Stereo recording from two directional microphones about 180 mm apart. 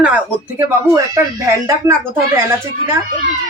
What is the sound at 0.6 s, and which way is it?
Speech, 15° right (ahead or behind).